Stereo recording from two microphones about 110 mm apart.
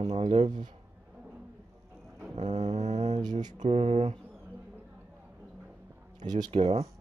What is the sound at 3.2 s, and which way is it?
Speech, 40° right (ahead or behind).